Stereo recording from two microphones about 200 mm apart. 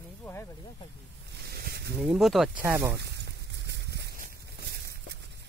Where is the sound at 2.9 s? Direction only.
60° right (ahead or behind).